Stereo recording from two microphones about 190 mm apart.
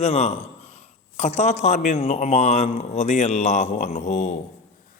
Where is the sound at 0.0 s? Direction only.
35° left (ahead or behind).